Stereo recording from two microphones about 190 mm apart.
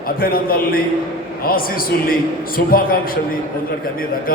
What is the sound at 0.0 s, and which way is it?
A man's voice, 50° left (ahead or behind).